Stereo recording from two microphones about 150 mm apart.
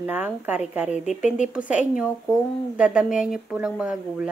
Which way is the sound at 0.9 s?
50° left (ahead or behind).